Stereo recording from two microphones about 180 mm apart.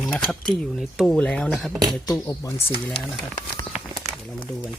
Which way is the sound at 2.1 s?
20° left (ahead or behind).